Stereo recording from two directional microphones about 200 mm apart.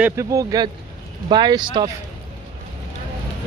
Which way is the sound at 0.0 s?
15° right (ahead or behind).